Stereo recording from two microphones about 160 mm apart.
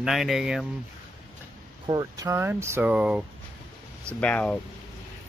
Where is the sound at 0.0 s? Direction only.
Centre (ahead or behind).